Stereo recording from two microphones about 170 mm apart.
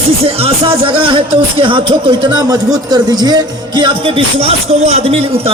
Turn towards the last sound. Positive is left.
turn(degrees=-35)  # may be behind; listen again after turning